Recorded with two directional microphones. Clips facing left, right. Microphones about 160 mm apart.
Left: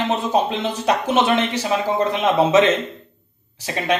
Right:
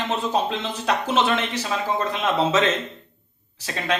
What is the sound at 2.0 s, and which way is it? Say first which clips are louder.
Speech: left 6 dB; 15° left (ahead or behind).